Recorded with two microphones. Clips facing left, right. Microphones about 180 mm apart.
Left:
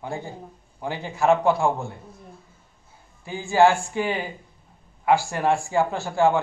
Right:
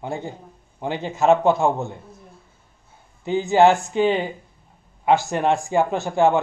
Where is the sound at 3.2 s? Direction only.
20° right (ahead or behind).